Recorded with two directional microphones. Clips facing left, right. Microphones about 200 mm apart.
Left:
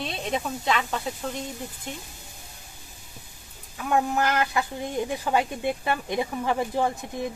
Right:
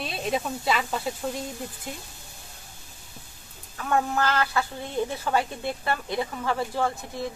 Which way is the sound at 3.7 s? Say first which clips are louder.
Left 1 dB; 10° left (ahead or behind).